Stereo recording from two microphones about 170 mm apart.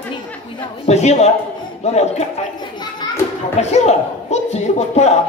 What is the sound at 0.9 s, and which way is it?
Speech, 40° left (ahead or behind).